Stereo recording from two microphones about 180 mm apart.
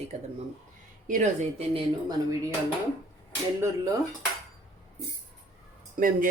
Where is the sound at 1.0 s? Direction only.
45° right (ahead or behind).